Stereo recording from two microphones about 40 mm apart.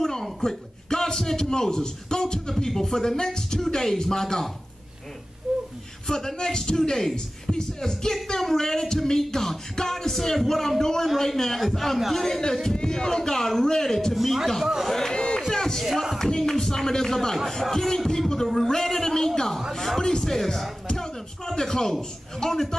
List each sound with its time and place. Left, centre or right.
0.0 s a man's voice: centre
5.5 s whimper: centre
6.0 s a man's voice: centre
12.6 s speech: centre
14.1 s a man's voice: centre
15.0 s a sound: centre
15.5 s music: centre
15.8 s a man's voice: centre
16.2 s speech: centre
20.8 s music: left
21.5 s speech: centre